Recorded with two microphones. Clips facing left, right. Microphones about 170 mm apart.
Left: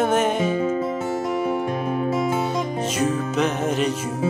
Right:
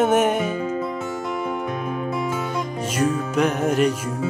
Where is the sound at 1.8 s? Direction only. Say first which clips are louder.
Left 3 dB; 35° left (ahead or behind).